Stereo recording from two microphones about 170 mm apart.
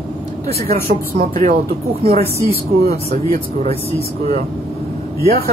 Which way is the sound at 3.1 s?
55° right (ahead or behind).